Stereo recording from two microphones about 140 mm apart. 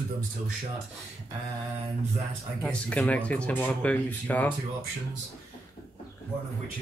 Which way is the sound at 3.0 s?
10° left (ahead or behind).